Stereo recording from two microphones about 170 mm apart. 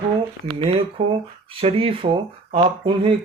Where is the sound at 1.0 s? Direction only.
30° right (ahead or behind).